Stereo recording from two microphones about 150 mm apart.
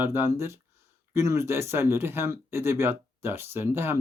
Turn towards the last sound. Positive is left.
turn(degrees=-15)  # may be behind; listen again after turning